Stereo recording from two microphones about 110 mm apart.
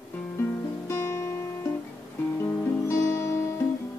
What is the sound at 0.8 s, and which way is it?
Music, 25° left (ahead or behind).